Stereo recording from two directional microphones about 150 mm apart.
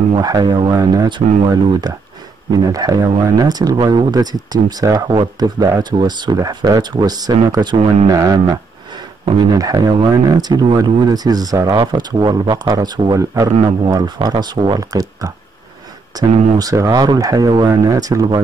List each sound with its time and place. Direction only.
0.1 s speech: 25° right (ahead or behind)